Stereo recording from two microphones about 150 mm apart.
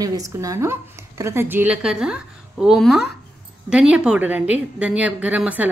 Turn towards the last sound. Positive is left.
turn(degrees=-10)  # may be behind; listen again after turning